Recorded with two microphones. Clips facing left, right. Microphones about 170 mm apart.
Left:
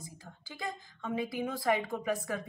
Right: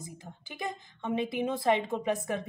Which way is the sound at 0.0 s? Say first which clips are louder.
Right 4 dB; 20° right (ahead or behind).